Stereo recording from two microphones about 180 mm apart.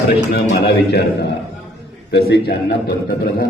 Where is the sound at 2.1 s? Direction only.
65° left (ahead or behind).